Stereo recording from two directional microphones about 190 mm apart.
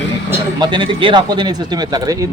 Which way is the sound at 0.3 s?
25° right (ahead or behind).